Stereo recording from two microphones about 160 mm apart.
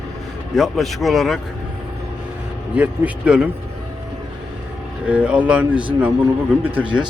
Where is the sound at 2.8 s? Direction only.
10° right (ahead or behind).